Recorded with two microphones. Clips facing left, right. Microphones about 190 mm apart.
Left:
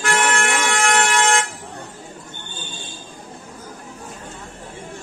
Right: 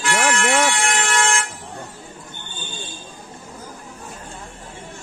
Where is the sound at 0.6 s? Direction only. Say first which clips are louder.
Left 2 dB; 55° left (ahead or behind).